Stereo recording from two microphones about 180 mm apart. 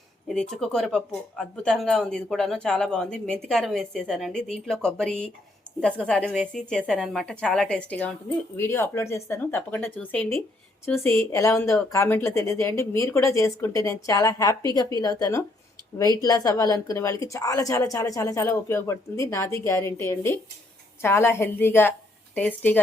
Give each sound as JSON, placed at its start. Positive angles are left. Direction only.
{"t": 0.3, "sound": "a woman's voice", "side_deg": 0}